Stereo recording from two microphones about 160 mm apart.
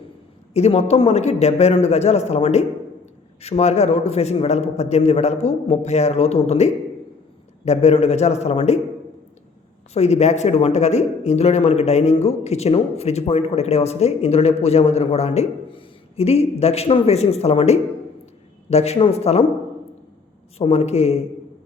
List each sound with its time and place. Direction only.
0.5 s a man's voice: 40° left (ahead or behind)
9.9 s a man's voice: 45° left (ahead or behind)
20.6 s a man's voice: 40° left (ahead or behind)